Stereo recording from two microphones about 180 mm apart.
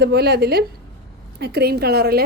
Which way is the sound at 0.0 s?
65° right (ahead or behind).